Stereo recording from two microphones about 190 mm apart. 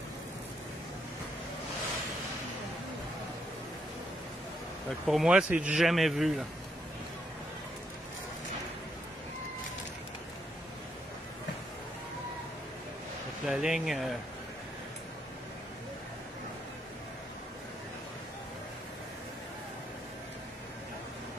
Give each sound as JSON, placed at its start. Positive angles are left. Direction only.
{"t": 5.0, "sound": "speech", "side_deg": 0}
{"t": 13.5, "sound": "speech", "side_deg": 0}